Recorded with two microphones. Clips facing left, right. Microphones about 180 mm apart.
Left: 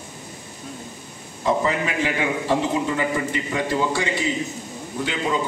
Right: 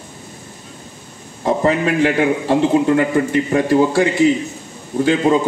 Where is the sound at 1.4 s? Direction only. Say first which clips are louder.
Right 6 dB; 50° right (ahead or behind).